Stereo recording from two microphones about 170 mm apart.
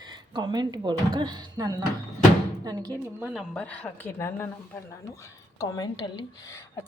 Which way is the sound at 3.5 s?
5° left (ahead or behind).